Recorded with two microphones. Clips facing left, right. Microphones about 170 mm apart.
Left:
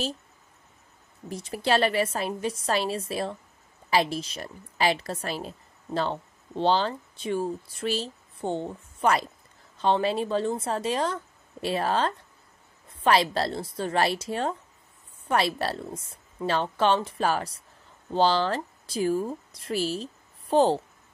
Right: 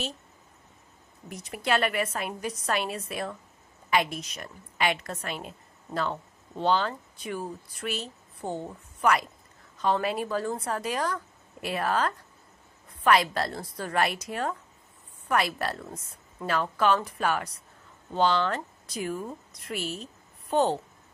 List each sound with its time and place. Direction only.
1.3 s a woman's voice: 30° left (ahead or behind)